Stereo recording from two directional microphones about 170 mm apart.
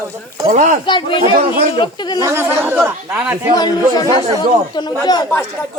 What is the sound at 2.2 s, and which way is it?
Speech, 15° right (ahead or behind).